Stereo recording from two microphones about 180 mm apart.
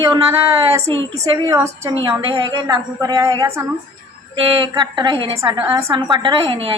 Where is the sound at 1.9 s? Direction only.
30° right (ahead or behind).